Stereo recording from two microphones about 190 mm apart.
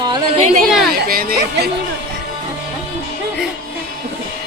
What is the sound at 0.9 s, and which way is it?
Speech, 50° right (ahead or behind).